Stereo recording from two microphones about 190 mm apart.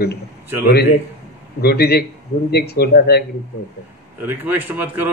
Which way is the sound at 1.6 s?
60° left (ahead or behind).